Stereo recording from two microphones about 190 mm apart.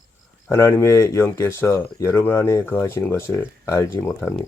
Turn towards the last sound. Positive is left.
turn(degrees=10)  # may be behind; listen again after turning